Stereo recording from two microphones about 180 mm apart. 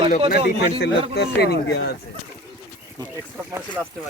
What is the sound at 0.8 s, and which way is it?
A man's voice, 65° left (ahead or behind).